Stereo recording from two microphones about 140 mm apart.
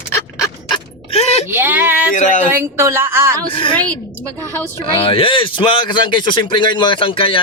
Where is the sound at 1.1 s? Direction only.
50° left (ahead or behind).